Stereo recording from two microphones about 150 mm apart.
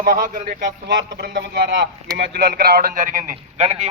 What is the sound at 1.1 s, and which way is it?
A man's voice, 90° right.